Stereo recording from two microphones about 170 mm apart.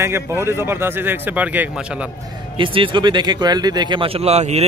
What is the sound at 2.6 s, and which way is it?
Speech, 30° right (ahead or behind).